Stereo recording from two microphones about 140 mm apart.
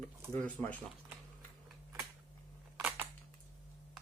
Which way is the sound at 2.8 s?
15° right (ahead or behind).